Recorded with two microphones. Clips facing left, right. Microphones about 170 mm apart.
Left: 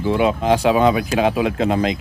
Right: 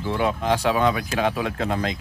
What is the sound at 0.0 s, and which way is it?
Speech, 20° left (ahead or behind).